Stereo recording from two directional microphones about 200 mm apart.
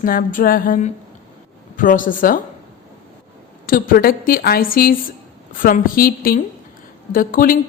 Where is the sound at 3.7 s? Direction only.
45° left (ahead or behind).